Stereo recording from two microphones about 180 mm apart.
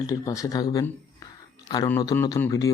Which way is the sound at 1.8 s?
15° left (ahead or behind).